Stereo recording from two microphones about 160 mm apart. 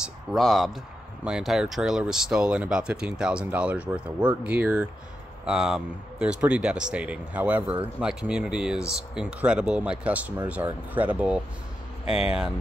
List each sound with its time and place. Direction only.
0.0 s speech: centre (ahead or behind)
12.0 s speech: 40° left (ahead or behind)